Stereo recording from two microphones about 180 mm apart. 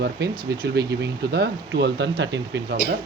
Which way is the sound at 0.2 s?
65° right (ahead or behind).